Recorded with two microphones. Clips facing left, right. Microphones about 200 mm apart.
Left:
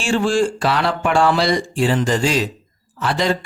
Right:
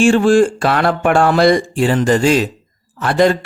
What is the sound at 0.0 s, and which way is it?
Speech, 55° right (ahead or behind).